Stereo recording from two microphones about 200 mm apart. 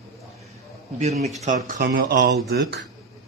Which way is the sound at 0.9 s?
35° right (ahead or behind).